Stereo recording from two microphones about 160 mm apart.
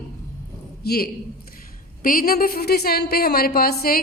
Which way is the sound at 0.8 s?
75° left (ahead or behind).